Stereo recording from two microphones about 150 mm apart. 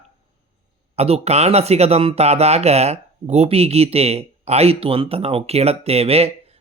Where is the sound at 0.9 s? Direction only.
45° right (ahead or behind).